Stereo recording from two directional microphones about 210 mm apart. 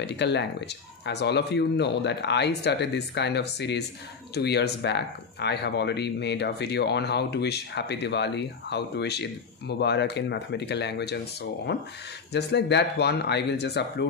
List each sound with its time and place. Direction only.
0.0 s speech: 55° left (ahead or behind)